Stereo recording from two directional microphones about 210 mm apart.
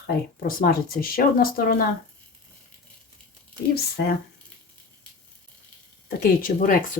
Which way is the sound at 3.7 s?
50° left (ahead or behind).